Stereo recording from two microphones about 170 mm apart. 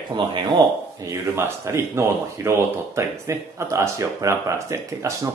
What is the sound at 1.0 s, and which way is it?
A man's voice, 15° right (ahead or behind).